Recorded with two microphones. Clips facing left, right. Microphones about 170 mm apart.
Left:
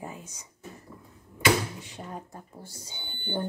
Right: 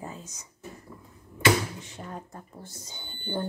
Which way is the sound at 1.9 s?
15° left (ahead or behind).